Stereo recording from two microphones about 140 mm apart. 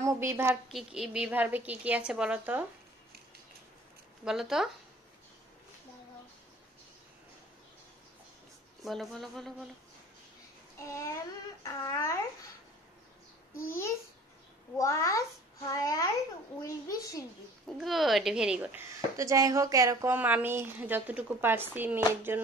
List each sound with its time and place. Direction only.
0.0 s a woman's voice: 20° right (ahead or behind)
0.7 s speech: centre (ahead or behind)
4.2 s a woman's voice: 5° right (ahead or behind)
8.8 s a woman's voice: centre (ahead or behind)
10.8 s speech: 20° left (ahead or behind)
13.7 s speech: 20° left (ahead or behind)
17.7 s a woman's voice: centre (ahead or behind)
18.9 s speech: 25° right (ahead or behind)